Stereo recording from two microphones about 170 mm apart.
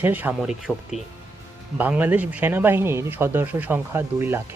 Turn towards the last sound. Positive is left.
turn(degrees=-15)  # may be behind; listen again after turning